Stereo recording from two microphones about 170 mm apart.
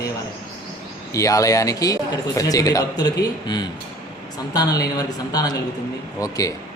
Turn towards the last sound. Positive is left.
turn(degrees=20)  # may be behind; listen again after turning